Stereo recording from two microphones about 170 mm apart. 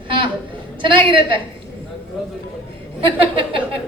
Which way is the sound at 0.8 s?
30° right (ahead or behind).